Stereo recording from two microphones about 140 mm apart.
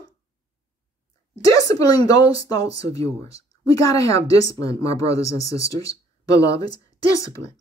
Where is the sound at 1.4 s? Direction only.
25° left (ahead or behind).